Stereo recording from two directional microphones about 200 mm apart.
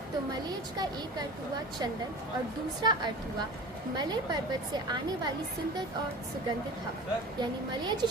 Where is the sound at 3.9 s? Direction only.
20° right (ahead or behind).